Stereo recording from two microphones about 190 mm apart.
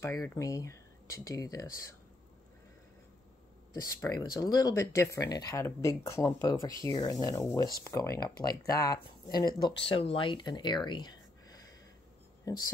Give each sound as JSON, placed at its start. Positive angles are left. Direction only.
{"t": 0.0, "sound": "speech", "side_deg": 15}
{"t": 3.8, "sound": "speech", "side_deg": 20}